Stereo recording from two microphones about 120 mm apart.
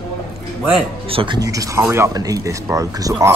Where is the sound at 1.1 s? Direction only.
50° right (ahead or behind).